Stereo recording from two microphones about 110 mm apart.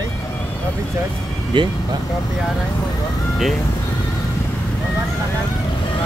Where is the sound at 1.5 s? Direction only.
45° right (ahead or behind).